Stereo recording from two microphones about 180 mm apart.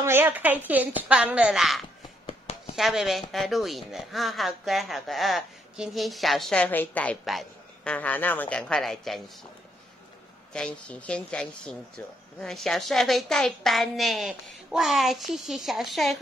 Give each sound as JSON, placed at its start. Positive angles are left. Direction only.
{"t": 0.0, "sound": "a woman's voice", "side_deg": -10}
{"t": 2.2, "sound": "a sound", "side_deg": 35}
{"t": 2.7, "sound": "speech", "side_deg": 0}
{"t": 10.5, "sound": "speech", "side_deg": 5}